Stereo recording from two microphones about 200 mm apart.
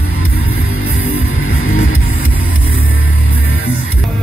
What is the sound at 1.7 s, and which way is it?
Music, 90° left.